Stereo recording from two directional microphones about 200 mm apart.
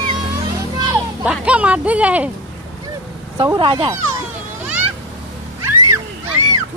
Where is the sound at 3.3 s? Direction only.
20° right (ahead or behind).